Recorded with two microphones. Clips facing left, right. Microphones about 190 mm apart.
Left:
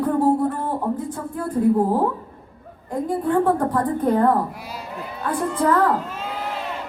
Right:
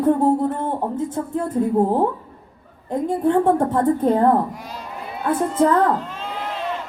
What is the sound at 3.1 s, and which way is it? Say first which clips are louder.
A woman's voice: right 2 dB; 25° right (ahead or behind).